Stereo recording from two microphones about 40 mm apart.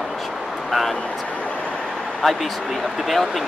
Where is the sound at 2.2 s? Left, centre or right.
Centre.